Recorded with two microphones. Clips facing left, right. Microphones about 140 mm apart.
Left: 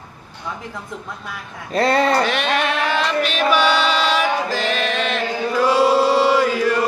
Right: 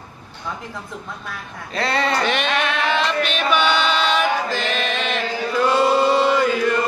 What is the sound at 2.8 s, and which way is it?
Chant, 5° left (ahead or behind).